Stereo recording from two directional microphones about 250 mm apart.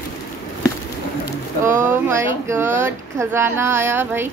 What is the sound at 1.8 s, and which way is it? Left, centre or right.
Speech, centre.